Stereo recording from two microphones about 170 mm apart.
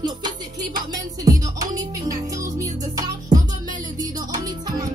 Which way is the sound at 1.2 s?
20° right (ahead or behind).